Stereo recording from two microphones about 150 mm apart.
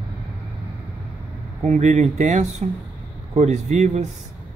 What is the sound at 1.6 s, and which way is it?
Speech, 50° right (ahead or behind).